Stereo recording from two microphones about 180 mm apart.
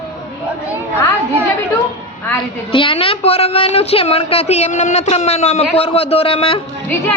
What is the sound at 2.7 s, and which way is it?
A woman's voice, 30° left (ahead or behind).